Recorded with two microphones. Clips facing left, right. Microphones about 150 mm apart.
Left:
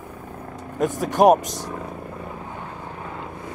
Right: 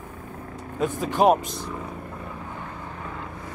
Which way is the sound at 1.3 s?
45° left (ahead or behind).